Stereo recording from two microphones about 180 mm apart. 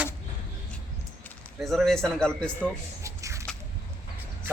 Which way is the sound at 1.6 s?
Centre (ahead or behind).